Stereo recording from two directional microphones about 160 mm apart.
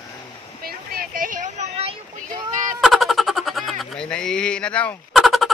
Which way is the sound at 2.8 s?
Centre (ahead or behind).